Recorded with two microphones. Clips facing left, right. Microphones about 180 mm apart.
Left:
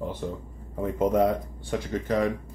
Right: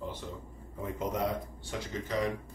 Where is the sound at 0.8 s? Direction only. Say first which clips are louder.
Left 10 dB; 55° left (ahead or behind).